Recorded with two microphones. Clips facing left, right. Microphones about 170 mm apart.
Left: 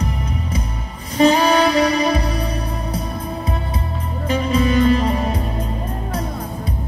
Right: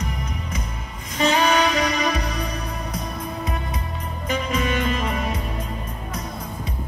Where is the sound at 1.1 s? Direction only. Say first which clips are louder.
Left 6 dB; 35° left (ahead or behind).